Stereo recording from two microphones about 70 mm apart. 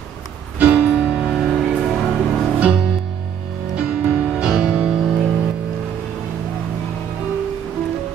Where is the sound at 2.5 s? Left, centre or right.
Centre.